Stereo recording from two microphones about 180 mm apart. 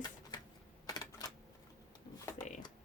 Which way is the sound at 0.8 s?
20° left (ahead or behind).